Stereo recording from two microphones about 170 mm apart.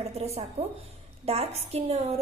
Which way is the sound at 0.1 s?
40° right (ahead or behind).